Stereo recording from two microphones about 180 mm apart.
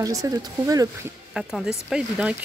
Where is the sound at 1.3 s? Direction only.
5° right (ahead or behind).